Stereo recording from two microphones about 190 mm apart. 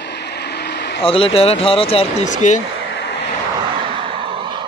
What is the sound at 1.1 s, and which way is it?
Speech, 30° left (ahead or behind).